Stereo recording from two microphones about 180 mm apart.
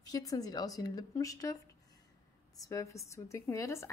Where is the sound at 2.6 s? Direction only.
20° left (ahead or behind).